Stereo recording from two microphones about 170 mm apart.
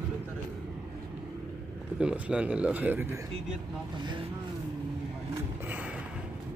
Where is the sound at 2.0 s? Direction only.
5° right (ahead or behind).